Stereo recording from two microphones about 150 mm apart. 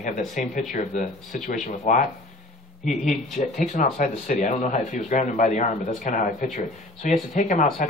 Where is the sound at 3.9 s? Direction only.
55° left (ahead or behind).